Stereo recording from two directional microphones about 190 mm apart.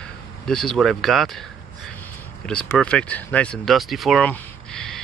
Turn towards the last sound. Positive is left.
turn(degrees=5)  # may be behind; listen again after turning